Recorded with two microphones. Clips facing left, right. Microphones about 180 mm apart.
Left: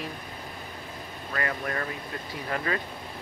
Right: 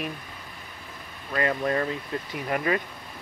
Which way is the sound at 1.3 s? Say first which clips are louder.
Right 6 dB; 25° right (ahead or behind).